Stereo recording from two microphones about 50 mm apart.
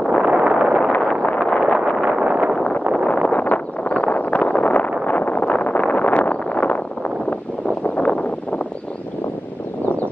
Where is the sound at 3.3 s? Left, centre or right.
Left.